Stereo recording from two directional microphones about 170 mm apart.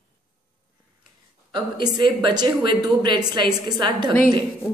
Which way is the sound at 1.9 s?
25° right (ahead or behind).